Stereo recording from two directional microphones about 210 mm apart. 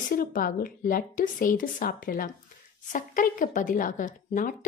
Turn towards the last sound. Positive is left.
turn(degrees=40)  # may be behind; listen again after turning